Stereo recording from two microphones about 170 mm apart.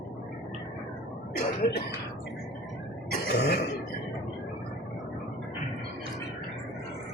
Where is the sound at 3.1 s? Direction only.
75° left (ahead or behind).